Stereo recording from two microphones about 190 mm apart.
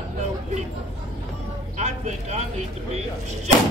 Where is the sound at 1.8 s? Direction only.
35° right (ahead or behind).